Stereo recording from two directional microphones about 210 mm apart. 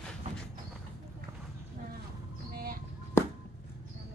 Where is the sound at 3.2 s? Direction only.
15° left (ahead or behind).